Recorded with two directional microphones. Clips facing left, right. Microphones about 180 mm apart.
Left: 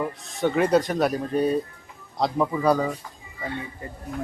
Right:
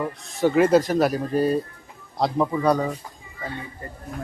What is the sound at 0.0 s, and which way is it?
Speech, centre (ahead or behind).